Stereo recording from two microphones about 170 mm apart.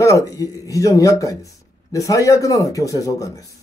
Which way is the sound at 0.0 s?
20° left (ahead or behind).